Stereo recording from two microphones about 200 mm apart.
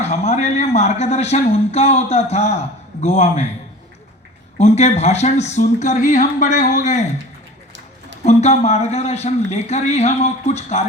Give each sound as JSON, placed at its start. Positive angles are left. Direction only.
{"t": 0.0, "sound": "speech", "side_deg": 35}
{"t": 4.5, "sound": "speech", "side_deg": 35}
{"t": 8.2, "sound": "speech", "side_deg": 35}